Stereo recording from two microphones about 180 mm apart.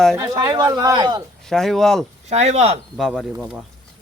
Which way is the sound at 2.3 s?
35° right (ahead or behind).